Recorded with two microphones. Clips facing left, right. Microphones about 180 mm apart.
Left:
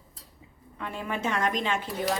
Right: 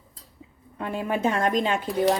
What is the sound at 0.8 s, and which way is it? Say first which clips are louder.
A woman's voice: right 6 dB; 40° right (ahead or behind).